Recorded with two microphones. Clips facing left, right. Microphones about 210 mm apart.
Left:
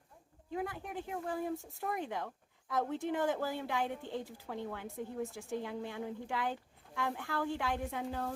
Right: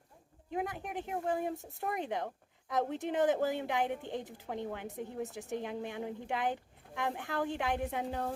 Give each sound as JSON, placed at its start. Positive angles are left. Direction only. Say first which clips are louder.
{"t": 0.5, "sound": "a woman's voice", "louder": "right 2 dB", "side_deg": -20}